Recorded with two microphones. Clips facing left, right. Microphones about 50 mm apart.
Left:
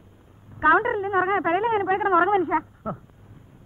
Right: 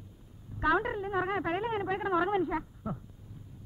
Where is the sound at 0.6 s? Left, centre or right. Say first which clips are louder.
Left 9 dB; left.